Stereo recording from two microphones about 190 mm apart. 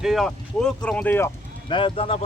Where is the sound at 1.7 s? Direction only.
25° left (ahead or behind).